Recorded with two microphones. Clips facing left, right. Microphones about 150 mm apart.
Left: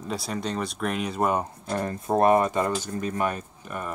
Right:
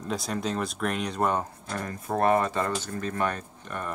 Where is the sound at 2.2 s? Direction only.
20° left (ahead or behind).